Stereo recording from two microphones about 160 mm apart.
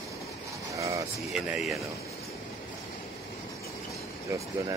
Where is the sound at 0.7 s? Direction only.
20° right (ahead or behind).